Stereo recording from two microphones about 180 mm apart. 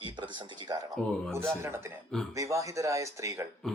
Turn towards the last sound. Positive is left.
turn(degrees=5)  # may be behind; listen again after turning